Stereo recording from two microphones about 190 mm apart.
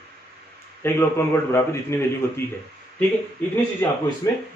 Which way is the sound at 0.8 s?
15° left (ahead or behind).